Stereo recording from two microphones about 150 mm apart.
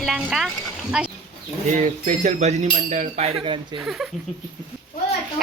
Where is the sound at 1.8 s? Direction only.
50° right (ahead or behind).